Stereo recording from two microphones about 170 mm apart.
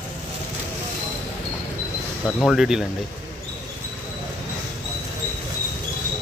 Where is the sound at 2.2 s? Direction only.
Centre (ahead or behind).